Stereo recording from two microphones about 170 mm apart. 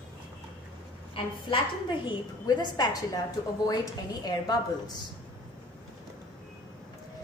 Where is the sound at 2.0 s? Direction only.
25° left (ahead or behind).